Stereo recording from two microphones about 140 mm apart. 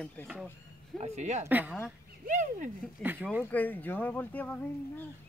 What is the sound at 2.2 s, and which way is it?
Speech, 60° right (ahead or behind).